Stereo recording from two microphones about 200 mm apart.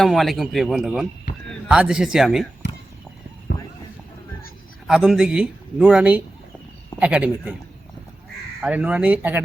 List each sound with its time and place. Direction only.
0.0 s speech: centre (ahead or behind)
3.5 s a sound: 55° left (ahead or behind)
4.9 s speech: 5° right (ahead or behind)
8.6 s speech: 5° right (ahead or behind)